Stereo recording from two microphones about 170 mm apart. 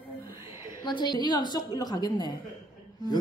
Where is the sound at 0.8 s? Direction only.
25° left (ahead or behind).